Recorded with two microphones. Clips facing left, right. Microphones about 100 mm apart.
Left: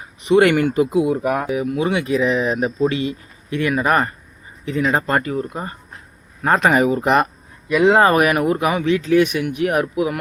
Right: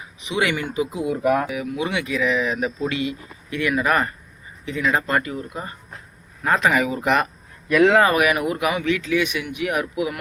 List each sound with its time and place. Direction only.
0.2 s speech: 50° left (ahead or behind)
1.6 s speech: 40° left (ahead or behind)
7.7 s speech: 20° left (ahead or behind)
8.0 s speech: 40° left (ahead or behind)